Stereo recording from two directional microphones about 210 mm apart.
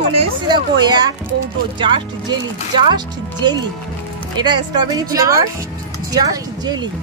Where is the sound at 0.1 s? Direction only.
20° right (ahead or behind).